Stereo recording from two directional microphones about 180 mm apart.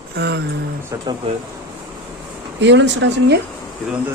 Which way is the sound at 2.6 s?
85° right.